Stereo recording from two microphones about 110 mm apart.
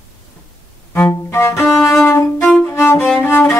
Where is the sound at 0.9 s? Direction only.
20° left (ahead or behind).